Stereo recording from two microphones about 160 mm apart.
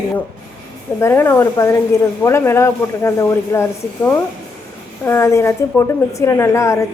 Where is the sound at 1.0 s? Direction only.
15° left (ahead or behind).